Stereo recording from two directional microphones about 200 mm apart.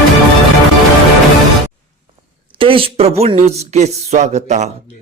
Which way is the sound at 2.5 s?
25° right (ahead or behind).